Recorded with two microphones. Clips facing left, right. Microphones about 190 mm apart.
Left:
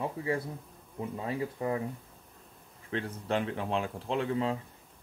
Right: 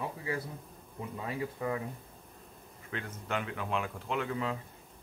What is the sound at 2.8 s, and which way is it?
Speech, 30° left (ahead or behind).